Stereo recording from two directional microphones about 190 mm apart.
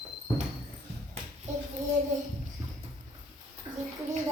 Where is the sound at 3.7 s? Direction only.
15° right (ahead or behind).